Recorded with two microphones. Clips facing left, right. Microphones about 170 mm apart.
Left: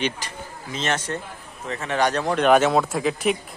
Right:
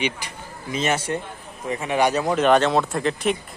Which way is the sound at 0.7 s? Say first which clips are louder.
Right 3 dB; 10° right (ahead or behind).